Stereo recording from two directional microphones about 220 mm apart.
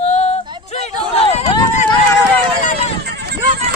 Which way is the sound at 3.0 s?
50° right (ahead or behind).